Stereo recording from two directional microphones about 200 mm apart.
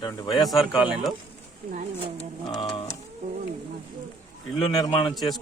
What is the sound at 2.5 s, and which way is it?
Speech, 20° left (ahead or behind).